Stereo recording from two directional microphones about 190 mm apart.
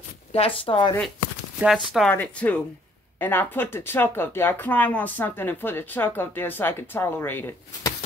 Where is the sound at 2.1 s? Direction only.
10° left (ahead or behind).